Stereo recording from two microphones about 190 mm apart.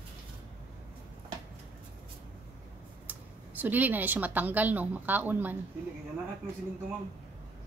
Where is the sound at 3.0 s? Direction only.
10° right (ahead or behind).